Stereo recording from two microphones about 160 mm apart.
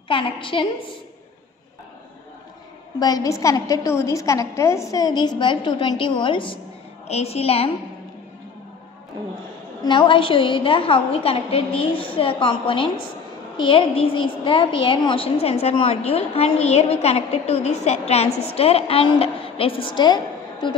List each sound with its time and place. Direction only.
0.1 s a woman's voice: 35° left (ahead or behind)
3.0 s a woman's voice: 20° left (ahead or behind); by 7.7 s 40° left (ahead or behind)
9.8 s a woman's voice: 30° left (ahead or behind)